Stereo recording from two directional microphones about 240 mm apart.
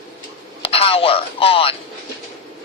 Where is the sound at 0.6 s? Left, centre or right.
Left.